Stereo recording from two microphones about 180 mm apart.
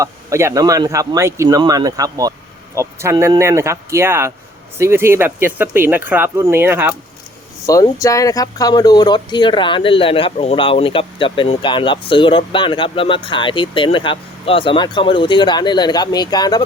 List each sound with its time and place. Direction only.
0.0 s speech: 15° right (ahead or behind)
7.7 s speech: 20° left (ahead or behind)